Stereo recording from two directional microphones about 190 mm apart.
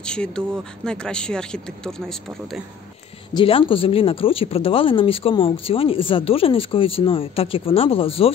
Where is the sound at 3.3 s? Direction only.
30° left (ahead or behind).